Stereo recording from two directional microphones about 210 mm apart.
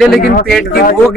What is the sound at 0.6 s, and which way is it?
Speech, 45° left (ahead or behind).